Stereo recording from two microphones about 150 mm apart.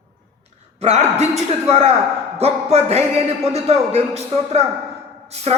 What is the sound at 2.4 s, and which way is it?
A man's voice, 45° right (ahead or behind).